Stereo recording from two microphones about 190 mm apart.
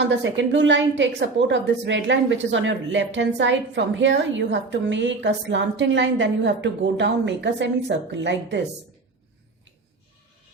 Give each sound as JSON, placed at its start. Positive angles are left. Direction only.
{"t": 0.0, "sound": "a woman's voice", "side_deg": -70}